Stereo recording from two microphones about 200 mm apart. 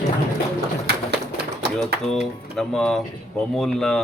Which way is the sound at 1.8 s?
Centre (ahead or behind).